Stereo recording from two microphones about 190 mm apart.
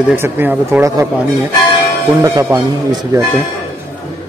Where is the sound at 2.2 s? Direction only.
15° right (ahead or behind).